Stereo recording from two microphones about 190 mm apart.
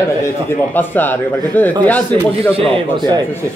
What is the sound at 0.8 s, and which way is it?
Speech, 10° left (ahead or behind).